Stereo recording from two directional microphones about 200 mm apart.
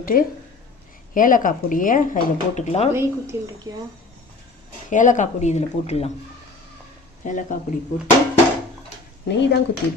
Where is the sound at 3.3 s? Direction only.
15° right (ahead or behind).